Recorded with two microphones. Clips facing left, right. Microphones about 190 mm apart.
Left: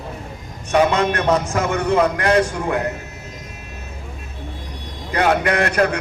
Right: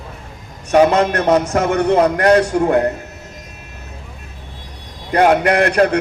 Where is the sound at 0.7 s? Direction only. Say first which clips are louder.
Right 4 dB; 45° right (ahead or behind).